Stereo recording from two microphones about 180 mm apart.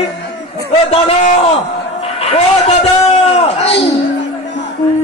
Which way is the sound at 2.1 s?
35° left (ahead or behind).